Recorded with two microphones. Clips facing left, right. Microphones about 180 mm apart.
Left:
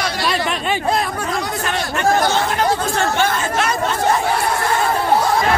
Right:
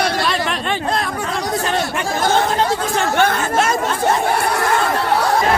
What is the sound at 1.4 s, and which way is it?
Speech, 30° right (ahead or behind).